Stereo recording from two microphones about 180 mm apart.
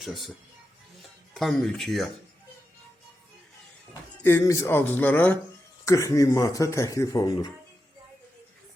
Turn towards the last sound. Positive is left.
turn(degrees=20)  # may be behind; listen again after turning